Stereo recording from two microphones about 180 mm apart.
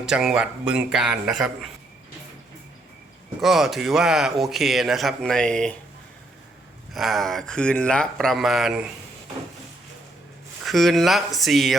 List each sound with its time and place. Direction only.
0.0 s speech: 5° right (ahead or behind)
3.4 s speech: centre (ahead or behind)
6.9 s speech: centre (ahead or behind)
10.7 s speech: centre (ahead or behind)